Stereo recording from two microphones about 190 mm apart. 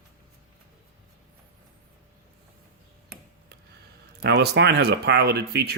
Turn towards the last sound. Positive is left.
turn(degrees=-60)  # may be behind; listen again after turning